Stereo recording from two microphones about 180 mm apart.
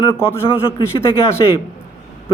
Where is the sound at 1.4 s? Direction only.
25° left (ahead or behind).